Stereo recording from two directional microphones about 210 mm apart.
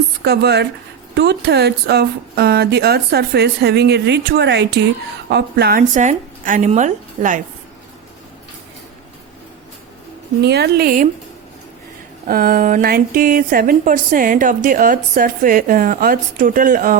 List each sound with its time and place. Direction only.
0.3 s speech: 50° right (ahead or behind)
5.9 s speech: 35° right (ahead or behind)
10.4 s speech: 50° right (ahead or behind)
12.3 s speech: 40° right (ahead or behind)